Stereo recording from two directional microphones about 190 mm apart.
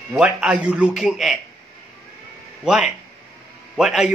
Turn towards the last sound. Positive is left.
turn(degrees=0)  # may be behind; listen again after turning